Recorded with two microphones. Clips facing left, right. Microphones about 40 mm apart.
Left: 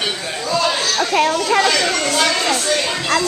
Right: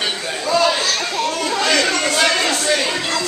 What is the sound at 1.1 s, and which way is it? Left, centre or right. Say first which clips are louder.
Children playing: left 5 dB; left.